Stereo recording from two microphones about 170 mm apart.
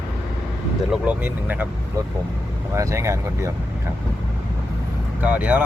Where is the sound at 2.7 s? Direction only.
15° right (ahead or behind).